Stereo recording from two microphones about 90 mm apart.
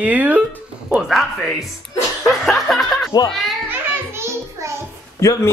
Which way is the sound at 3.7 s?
30° right (ahead or behind).